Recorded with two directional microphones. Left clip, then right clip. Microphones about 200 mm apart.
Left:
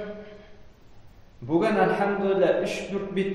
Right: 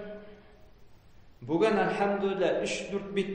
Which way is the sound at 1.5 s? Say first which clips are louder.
Left 4 dB; 40° right (ahead or behind).